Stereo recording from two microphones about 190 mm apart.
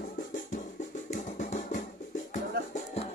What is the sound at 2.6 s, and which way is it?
Music, 55° right (ahead or behind).